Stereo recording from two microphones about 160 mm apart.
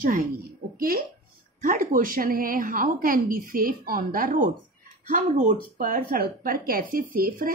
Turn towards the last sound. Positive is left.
turn(degrees=-65)  # may be behind; listen again after turning